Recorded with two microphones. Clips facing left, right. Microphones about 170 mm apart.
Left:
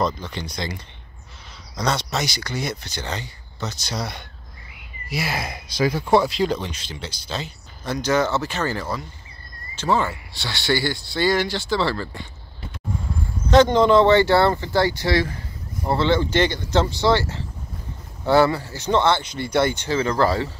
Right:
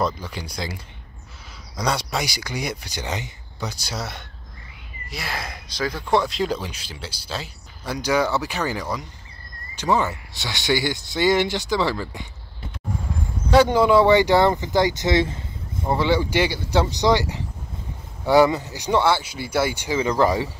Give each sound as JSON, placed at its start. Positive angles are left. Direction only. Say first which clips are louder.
{"t": 0.0, "sound": "speech", "louder": "left 1 dB", "side_deg": -10}
{"t": 5.1, "sound": "speech", "louder": "left 5 dB", "side_deg": 10}
{"t": 13.5, "sound": "speech", "louder": "left 1 dB", "side_deg": -10}
{"t": 16.0, "sound": "speech", "louder": "left 1 dB", "side_deg": -10}